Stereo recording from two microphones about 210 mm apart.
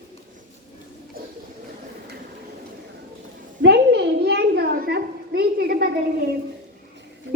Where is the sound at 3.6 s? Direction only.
55° right (ahead or behind).